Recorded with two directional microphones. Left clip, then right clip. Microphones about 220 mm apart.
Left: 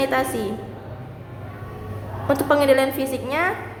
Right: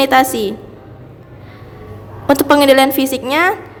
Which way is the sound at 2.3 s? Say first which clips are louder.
Right 7 dB; 45° right (ahead or behind).